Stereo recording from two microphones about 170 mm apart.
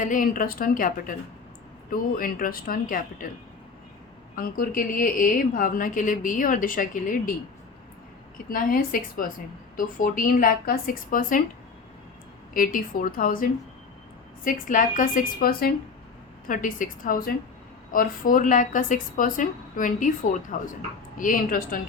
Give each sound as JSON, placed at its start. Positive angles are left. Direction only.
{"t": 0.0, "sound": "a woman's voice", "side_deg": 50}
{"t": 4.4, "sound": "a woman's voice", "side_deg": 60}
{"t": 8.4, "sound": "speech", "side_deg": 55}
{"t": 12.5, "sound": "a woman's voice", "side_deg": 55}